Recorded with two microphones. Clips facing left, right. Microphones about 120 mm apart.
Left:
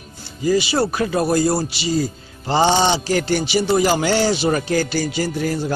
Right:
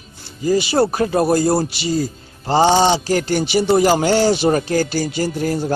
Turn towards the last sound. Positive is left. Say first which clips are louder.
# right 2 dB
turn(degrees=-45)  # may be behind; listen again after turning